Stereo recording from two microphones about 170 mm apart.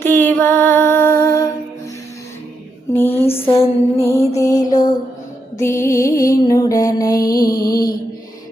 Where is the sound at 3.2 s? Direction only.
35° left (ahead or behind).